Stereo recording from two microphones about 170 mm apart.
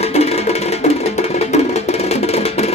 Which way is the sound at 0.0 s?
40° left (ahead or behind).